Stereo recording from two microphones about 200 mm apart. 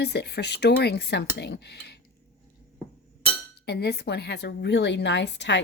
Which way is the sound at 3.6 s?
55° left (ahead or behind).